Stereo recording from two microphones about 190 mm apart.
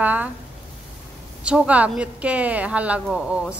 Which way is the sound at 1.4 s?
5° right (ahead or behind).